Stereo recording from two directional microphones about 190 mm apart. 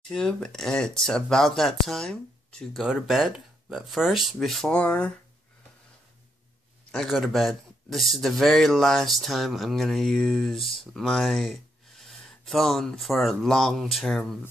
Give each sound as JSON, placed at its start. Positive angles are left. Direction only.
{"t": 0.1, "sound": "a man's voice", "side_deg": 5}
{"t": 6.9, "sound": "a man's voice", "side_deg": 0}